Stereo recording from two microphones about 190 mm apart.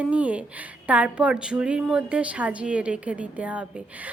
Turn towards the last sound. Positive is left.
turn(degrees=-5)  # may be behind; listen again after turning